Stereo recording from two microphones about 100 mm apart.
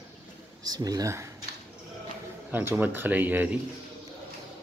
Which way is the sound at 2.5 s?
20° right (ahead or behind).